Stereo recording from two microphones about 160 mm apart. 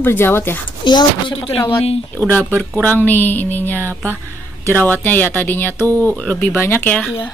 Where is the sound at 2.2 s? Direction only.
10° left (ahead or behind).